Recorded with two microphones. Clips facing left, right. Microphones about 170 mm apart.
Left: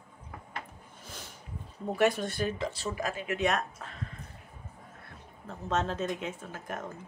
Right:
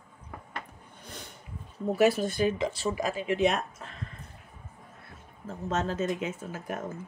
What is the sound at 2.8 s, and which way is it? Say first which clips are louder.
Speech: right 4 dB; 15° right (ahead or behind).